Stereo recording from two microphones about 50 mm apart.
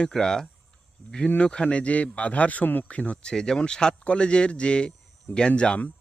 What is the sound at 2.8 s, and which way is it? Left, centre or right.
Speech, left.